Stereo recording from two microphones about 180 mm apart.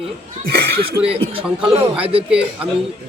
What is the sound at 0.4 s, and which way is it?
Speech, 60° right (ahead or behind).